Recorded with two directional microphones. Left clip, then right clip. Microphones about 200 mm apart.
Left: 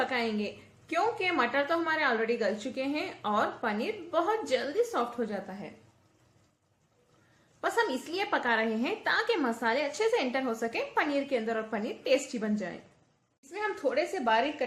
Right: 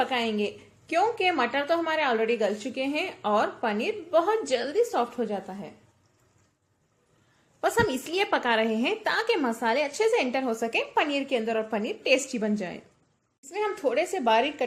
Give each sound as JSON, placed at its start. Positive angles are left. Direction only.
{"t": 0.0, "sound": "a woman's voice", "side_deg": -30}
{"t": 7.6, "sound": "a woman's voice", "side_deg": -30}